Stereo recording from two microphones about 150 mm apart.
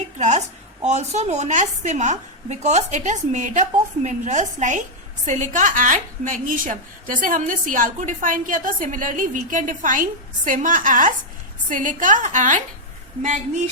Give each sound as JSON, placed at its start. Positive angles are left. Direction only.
{"t": 0.2, "sound": "a woman's voice", "side_deg": -50}